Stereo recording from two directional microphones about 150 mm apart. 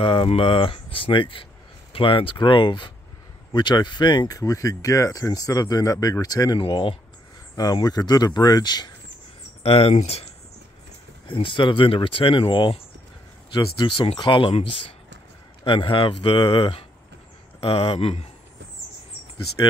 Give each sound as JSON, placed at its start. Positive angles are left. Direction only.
{"t": 0.0, "sound": "speech", "side_deg": 35}
{"t": 6.6, "sound": "speech", "side_deg": 35}
{"t": 7.5, "sound": "speech", "side_deg": 25}
{"t": 9.6, "sound": "speech", "side_deg": 40}
{"t": 11.2, "sound": "speech", "side_deg": 35}
{"t": 19.6, "sound": "speech", "side_deg": 30}